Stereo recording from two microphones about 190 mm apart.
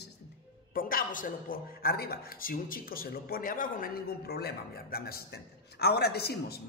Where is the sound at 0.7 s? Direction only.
50° left (ahead or behind).